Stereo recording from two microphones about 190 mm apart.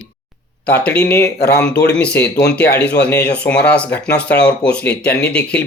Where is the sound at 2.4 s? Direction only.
55° left (ahead or behind).